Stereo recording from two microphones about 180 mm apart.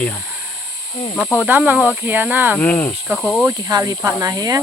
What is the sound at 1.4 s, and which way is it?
Speech, 10° right (ahead or behind).